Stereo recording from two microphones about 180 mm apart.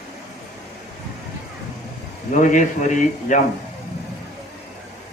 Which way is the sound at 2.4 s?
45° left (ahead or behind).